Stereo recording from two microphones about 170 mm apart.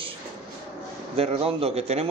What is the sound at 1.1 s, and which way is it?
Speech, 35° right (ahead or behind).